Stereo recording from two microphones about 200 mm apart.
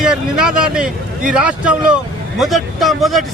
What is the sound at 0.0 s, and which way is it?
A man's voice, 5° right (ahead or behind).